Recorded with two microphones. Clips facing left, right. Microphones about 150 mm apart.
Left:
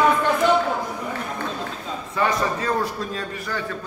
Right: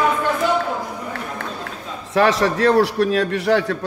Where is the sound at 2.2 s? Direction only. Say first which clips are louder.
Right 7 dB; 80° right.